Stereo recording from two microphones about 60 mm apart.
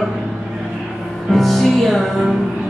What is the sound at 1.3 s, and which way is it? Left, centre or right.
Music, centre.